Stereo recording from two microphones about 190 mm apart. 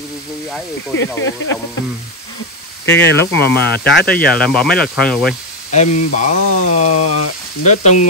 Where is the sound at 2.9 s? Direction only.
65° left (ahead or behind).